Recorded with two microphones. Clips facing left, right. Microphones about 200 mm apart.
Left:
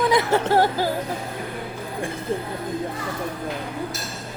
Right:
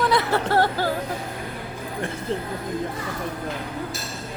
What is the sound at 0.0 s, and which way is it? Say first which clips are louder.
Speech: left 2 dB; 15° left (ahead or behind).